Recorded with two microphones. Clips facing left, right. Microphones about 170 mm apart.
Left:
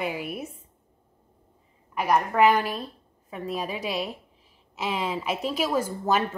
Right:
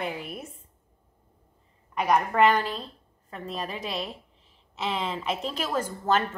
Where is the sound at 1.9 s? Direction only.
5° left (ahead or behind).